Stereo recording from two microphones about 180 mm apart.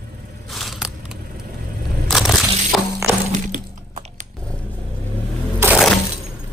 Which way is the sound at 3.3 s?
45° right (ahead or behind).